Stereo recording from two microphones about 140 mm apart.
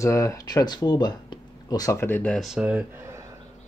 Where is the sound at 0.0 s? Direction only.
20° left (ahead or behind).